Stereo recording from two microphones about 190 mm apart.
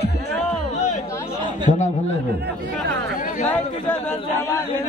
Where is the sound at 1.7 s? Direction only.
40° left (ahead or behind).